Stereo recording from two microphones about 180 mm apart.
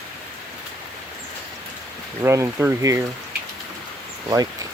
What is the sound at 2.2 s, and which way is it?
Speech, 15° right (ahead or behind).